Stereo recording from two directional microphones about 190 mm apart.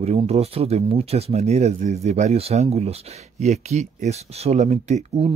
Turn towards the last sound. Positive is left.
turn(degrees=-35)  # may be behind; listen again after turning